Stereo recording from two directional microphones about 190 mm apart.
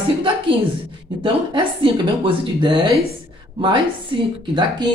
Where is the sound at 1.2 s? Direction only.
25° right (ahead or behind).